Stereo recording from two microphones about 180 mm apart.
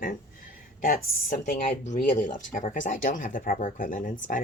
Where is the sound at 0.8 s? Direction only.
50° left (ahead or behind).